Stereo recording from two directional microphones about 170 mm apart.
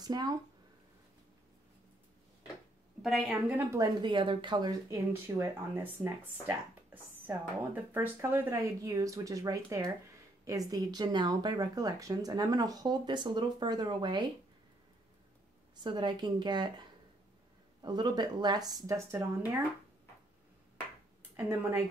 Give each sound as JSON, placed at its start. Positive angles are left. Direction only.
{"t": 0.0, "sound": "speech", "side_deg": -20}
{"t": 3.0, "sound": "a woman's voice", "side_deg": 0}
{"t": 3.5, "sound": "speech", "side_deg": -20}
{"t": 15.7, "sound": "speech", "side_deg": -25}
{"t": 17.8, "sound": "speech", "side_deg": -25}
{"t": 21.4, "sound": "speech", "side_deg": -15}